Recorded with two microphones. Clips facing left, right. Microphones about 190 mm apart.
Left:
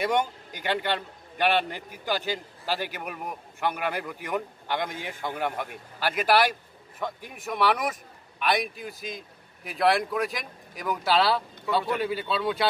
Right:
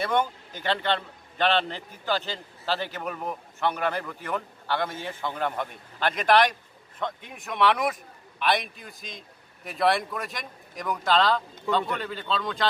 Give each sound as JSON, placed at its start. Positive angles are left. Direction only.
{"t": 0.0, "sound": "a man's voice", "side_deg": 15}